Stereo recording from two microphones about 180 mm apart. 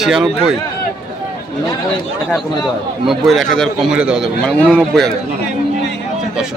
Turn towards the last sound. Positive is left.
turn(degrees=0)  # may be behind; listen again after turning